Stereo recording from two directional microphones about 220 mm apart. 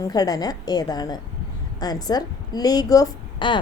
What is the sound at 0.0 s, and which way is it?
A woman's voice, 15° left (ahead or behind).